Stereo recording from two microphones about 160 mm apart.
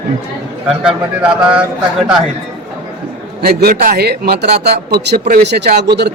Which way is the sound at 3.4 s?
80° right.